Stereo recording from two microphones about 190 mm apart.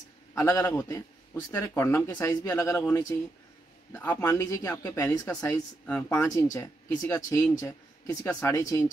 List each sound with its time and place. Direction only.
0.3 s a man's voice: 15° left (ahead or behind)